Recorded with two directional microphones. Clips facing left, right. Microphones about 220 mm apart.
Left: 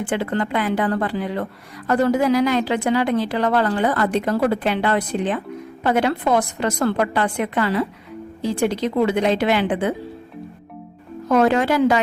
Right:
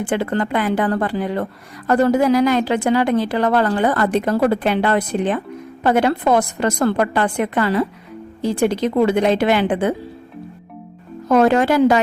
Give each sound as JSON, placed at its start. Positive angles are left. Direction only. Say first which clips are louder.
{"t": 0.0, "sound": "a woman's voice", "louder": "right 2 dB", "side_deg": -45}
{"t": 11.3, "sound": "a woman's voice", "louder": "right 3 dB", "side_deg": -45}